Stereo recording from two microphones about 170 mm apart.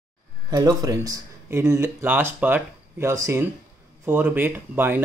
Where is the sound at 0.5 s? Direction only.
20° right (ahead or behind).